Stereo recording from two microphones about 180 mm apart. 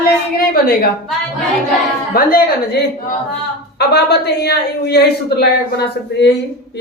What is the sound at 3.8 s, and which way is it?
A woman's voice, 65° left (ahead or behind).